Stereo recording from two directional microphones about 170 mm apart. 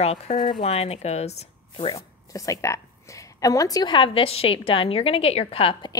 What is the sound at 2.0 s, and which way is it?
A woman's voice, 20° left (ahead or behind).